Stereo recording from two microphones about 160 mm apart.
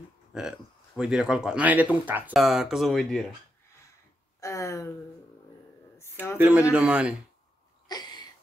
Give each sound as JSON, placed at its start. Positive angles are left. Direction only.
{"t": 0.3, "sound": "speech", "side_deg": -5}
{"t": 4.4, "sound": "speech", "side_deg": 20}
{"t": 6.3, "sound": "a man's voice", "side_deg": -10}
{"t": 7.9, "sound": "a sound", "side_deg": 25}